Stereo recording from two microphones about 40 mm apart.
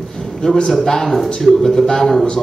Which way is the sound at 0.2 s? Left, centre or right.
Centre.